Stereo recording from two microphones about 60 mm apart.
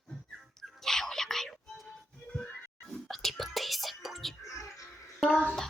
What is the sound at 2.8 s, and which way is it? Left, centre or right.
Whispering, centre.